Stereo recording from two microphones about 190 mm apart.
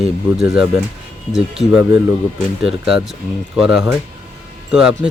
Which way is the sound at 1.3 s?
Centre (ahead or behind).